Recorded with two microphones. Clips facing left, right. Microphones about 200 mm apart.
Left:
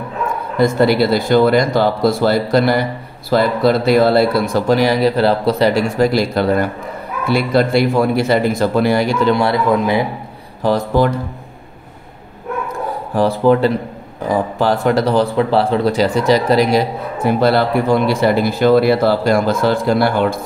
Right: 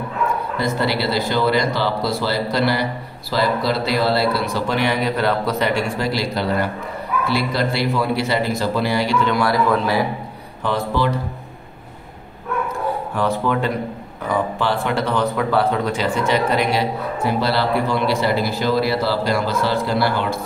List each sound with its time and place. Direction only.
0.6 s speech: 50° left (ahead or behind)
9.3 s a man's voice: 25° left (ahead or behind)
10.6 s speech: 45° left (ahead or behind)
13.1 s speech: 35° left (ahead or behind); by 20.3 s 50° left (ahead or behind)